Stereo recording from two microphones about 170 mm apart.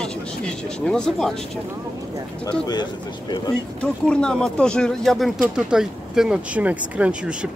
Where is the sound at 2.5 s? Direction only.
25° left (ahead or behind).